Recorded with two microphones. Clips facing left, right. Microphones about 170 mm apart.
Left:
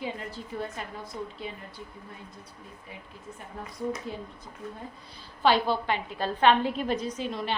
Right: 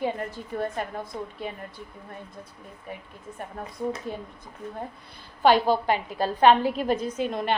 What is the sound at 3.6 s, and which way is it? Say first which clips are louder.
Speech: right 2 dB; 55° right (ahead or behind).